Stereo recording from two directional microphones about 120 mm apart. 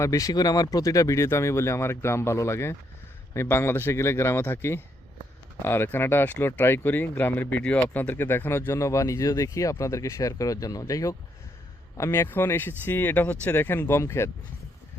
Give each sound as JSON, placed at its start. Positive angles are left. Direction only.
{"t": 0.0, "sound": "speech", "side_deg": 30}